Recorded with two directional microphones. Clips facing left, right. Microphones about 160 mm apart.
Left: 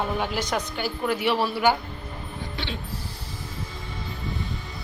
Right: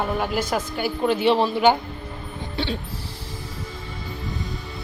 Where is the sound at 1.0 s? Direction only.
25° right (ahead or behind).